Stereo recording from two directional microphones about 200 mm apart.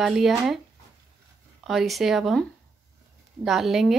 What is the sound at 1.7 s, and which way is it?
Speech, centre (ahead or behind).